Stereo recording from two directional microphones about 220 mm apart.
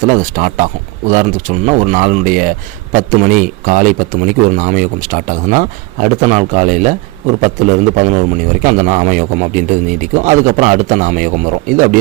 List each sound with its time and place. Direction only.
0.0 s a man's voice: 35° right (ahead or behind)